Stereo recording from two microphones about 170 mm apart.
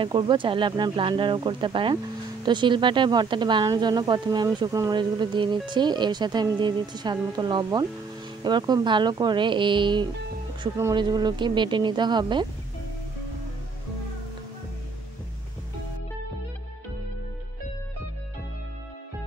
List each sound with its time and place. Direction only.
0.0 s a woman's voice: 30° right (ahead or behind)